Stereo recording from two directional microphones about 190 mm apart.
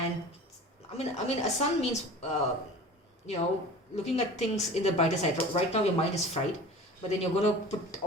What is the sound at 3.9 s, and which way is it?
A woman's voice, 35° left (ahead or behind).